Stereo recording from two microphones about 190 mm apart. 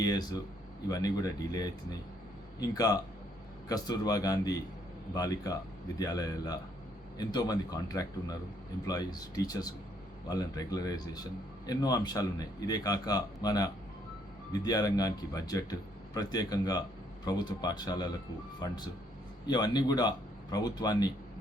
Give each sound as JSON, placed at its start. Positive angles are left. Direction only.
{"t": 0.0, "sound": "speech", "side_deg": 20}
{"t": 19.5, "sound": "speech", "side_deg": 20}